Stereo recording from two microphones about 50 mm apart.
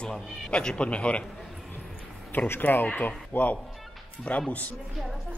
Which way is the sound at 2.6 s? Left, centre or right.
Left.